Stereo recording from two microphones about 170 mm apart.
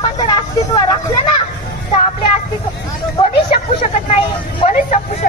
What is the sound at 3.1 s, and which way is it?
Vehicle, 35° left (ahead or behind).